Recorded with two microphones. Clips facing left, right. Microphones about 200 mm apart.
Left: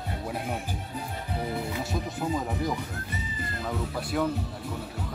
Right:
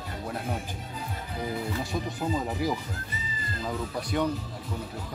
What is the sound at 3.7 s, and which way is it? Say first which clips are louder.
Speech: even; centre (ahead or behind).